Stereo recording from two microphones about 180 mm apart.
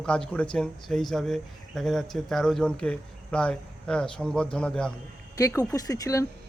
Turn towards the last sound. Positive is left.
turn(degrees=20)  # may be behind; listen again after turning